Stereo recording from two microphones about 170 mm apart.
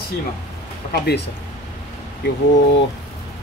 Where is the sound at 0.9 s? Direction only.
70° left (ahead or behind).